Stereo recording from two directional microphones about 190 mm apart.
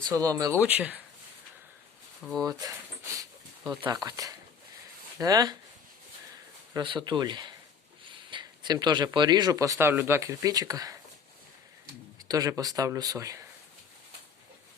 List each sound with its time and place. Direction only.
0.0 s speech: 20° right (ahead or behind)
2.2 s speech: centre (ahead or behind)
2.5 s a sound: 20° right (ahead or behind)
3.9 s speech: 20° right (ahead or behind)
6.7 s speech: 25° right (ahead or behind)
12.3 s speech: 20° right (ahead or behind)